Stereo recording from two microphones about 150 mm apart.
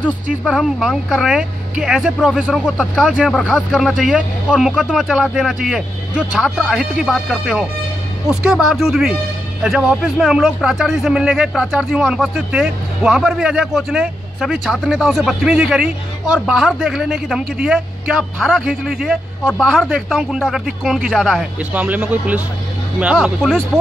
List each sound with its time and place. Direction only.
0.3 s a man's voice: 5° right (ahead or behind)